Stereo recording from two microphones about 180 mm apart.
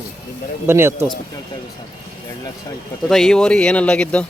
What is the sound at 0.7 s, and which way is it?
Speech, 15° right (ahead or behind).